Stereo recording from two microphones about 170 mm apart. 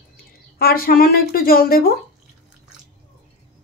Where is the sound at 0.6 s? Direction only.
60° left (ahead or behind).